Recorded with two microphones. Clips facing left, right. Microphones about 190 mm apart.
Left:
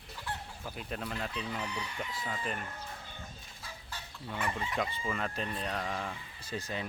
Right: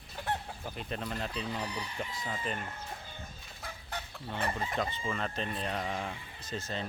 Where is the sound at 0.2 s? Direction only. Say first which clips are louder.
Right 6 dB; 60° right (ahead or behind).